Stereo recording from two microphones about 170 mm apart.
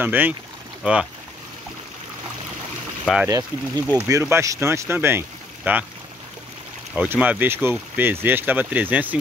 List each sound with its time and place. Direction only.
0.0 s speech: 10° right (ahead or behind)
3.3 s speech: 20° right (ahead or behind)
7.0 s speech: 10° right (ahead or behind)